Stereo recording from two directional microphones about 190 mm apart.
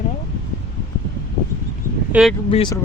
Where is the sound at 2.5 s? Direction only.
25° left (ahead or behind).